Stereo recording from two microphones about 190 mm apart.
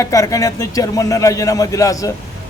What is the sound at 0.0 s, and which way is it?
A man's voice, 15° left (ahead or behind).